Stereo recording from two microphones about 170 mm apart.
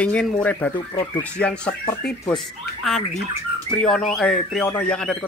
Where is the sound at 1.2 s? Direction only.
5° left (ahead or behind).